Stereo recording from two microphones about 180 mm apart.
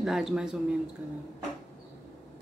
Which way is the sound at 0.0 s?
Centre (ahead or behind).